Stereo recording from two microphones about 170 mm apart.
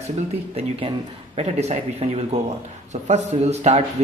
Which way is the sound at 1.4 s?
40° right (ahead or behind).